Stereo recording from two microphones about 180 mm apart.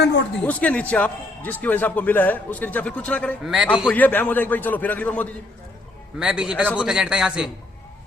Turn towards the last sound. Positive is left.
turn(degrees=-5)  # may be behind; listen again after turning